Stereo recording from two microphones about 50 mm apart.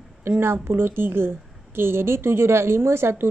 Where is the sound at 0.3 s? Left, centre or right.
Right.